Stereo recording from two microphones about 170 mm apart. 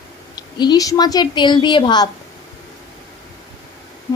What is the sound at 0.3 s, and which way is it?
A woman's voice, 25° left (ahead or behind).